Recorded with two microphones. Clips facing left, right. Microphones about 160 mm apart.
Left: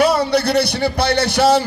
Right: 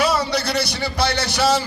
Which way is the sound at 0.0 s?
55° left (ahead or behind).